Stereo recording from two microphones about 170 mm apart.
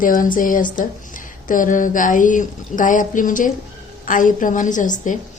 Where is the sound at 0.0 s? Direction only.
55° left (ahead or behind).